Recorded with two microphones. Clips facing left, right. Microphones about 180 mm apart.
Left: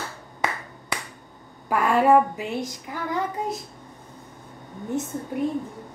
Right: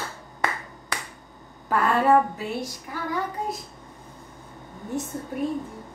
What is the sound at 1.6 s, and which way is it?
A woman's voice, 10° left (ahead or behind).